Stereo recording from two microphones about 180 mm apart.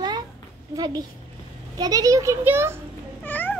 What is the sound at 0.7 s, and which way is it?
A woman's voice, 20° right (ahead or behind).